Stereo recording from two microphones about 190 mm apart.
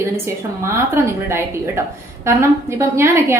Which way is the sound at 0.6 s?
15° right (ahead or behind).